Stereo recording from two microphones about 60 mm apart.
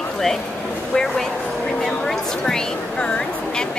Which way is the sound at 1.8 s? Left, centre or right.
Centre.